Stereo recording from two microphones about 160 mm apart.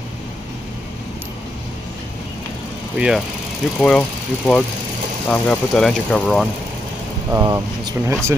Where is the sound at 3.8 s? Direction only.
5° left (ahead or behind).